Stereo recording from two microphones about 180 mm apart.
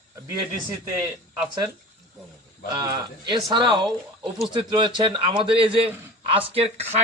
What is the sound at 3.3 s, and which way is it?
A man's voice, 25° right (ahead or behind).